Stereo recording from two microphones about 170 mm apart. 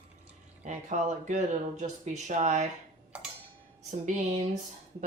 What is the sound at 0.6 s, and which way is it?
Speech, 45° right (ahead or behind).